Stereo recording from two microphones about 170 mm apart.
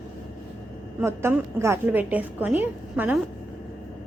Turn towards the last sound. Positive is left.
turn(degrees=-10)  # may be behind; listen again after turning